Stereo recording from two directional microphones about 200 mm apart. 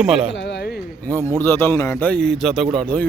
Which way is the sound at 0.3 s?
60° left (ahead or behind).